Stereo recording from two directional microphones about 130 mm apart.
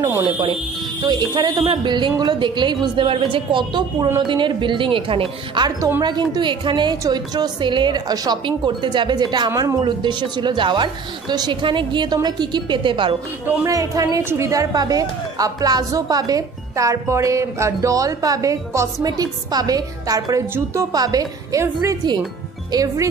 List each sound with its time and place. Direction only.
0.0 s a woman's voice: 25° right (ahead or behind)
1.0 s speech: 35° right (ahead or behind)
5.8 s a woman's voice: 20° right (ahead or behind)
6.0 s speech: 35° right (ahead or behind)
13.7 s a woman's voice: 25° right (ahead or behind)